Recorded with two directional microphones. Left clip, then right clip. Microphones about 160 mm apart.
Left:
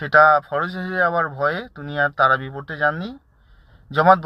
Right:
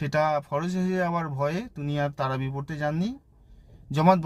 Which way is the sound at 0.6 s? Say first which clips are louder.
Left 8 dB; 15° right (ahead or behind).